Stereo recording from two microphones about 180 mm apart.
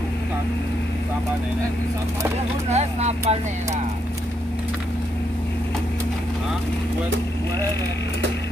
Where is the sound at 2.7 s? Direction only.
40° right (ahead or behind).